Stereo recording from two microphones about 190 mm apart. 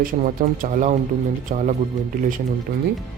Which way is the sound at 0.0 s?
45° right (ahead or behind).